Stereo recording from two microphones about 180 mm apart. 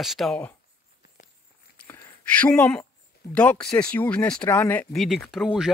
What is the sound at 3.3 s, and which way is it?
Speech, 5° left (ahead or behind).